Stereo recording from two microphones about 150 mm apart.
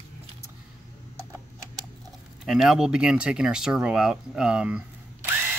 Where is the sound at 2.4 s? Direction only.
5° right (ahead or behind).